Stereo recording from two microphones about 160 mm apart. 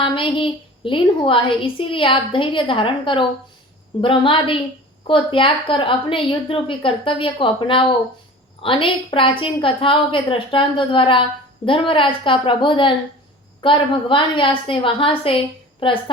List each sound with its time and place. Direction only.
0.0 s a woman's voice: 30° left (ahead or behind)